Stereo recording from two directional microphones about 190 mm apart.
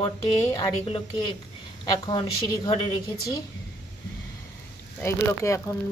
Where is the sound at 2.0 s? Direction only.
25° left (ahead or behind).